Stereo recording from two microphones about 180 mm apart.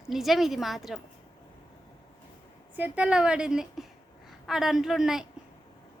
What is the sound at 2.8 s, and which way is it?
A woman's voice, 10° right (ahead or behind).